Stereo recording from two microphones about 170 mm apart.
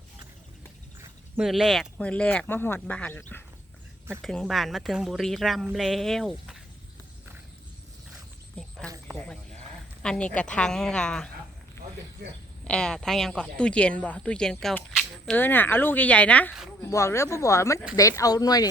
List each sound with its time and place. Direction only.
1.4 s speech: centre (ahead or behind)
4.2 s speech: centre (ahead or behind)
9.1 s sheep: 5° left (ahead or behind)
10.0 s speech: 5° left (ahead or behind)
12.6 s speech: 5° left (ahead or behind)
15.4 s speech: 10° left (ahead or behind)